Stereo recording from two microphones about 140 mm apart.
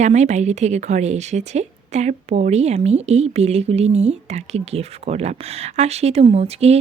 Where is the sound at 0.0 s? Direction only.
55° right (ahead or behind).